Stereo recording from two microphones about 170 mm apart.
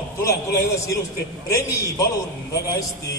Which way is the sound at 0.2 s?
20° left (ahead or behind).